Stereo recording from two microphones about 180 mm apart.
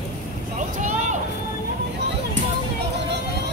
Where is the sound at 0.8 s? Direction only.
45° right (ahead or behind).